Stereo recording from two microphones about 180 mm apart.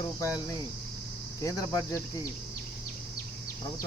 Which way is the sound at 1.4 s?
20° left (ahead or behind).